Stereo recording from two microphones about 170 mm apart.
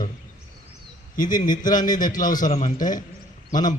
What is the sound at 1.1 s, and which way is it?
A man's voice, 50° left (ahead or behind).